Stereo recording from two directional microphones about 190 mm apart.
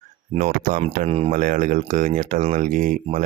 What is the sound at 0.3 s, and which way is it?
Speech, 40° right (ahead or behind).